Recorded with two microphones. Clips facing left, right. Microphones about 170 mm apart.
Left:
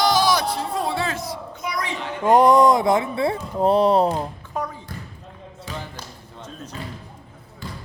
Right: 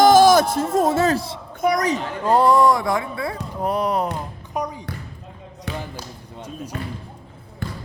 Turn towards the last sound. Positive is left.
turn(degrees=-60)  # may be behind; listen again after turning